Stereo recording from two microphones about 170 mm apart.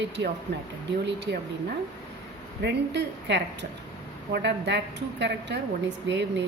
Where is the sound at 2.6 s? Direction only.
90° right.